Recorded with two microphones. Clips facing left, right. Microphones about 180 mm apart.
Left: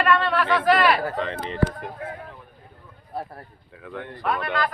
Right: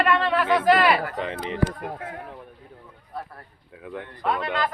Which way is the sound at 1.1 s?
15° right (ahead or behind).